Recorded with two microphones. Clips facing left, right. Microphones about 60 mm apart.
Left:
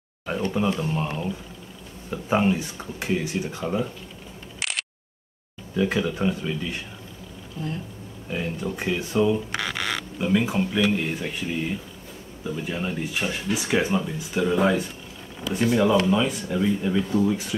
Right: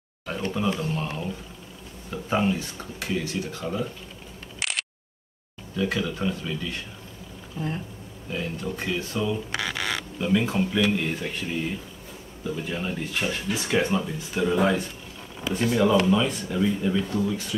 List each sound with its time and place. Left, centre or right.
0.5 s speech: centre
4.6 s a sound: centre
5.8 s speech: centre
8.3 s speech: centre
9.8 s a sound: centre
10.1 s a man's voice: centre
17.2 s speech: left